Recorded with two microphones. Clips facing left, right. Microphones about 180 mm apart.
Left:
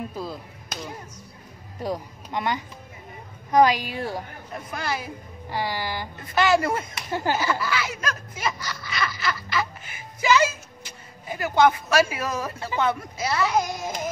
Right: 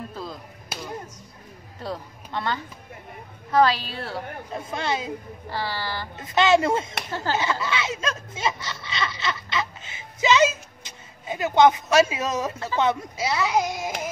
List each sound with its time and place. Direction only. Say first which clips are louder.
0.1 s chop: left 2 dB; 10° left (ahead or behind)
1.8 s a woman's voice: left 4 dB; 15° left (ahead or behind)
4.6 s speech: right 2 dB; 25° right (ahead or behind)
5.5 s speech: left 2 dB; 15° left (ahead or behind)
6.1 s speech: right 2 dB; 20° right (ahead or behind)
7.1 s speech: left 5 dB; 15° left (ahead or behind)
7.3 s speech: even; 20° right (ahead or behind)